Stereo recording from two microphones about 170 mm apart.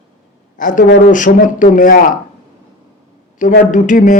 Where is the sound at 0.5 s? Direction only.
50° left (ahead or behind).